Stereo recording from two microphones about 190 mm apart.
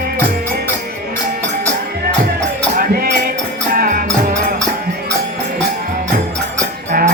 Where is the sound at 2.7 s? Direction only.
50° right (ahead or behind).